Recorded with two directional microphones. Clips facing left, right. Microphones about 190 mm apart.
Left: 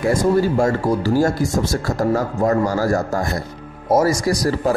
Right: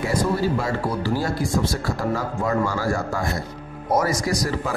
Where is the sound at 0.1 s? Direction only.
45° left (ahead or behind).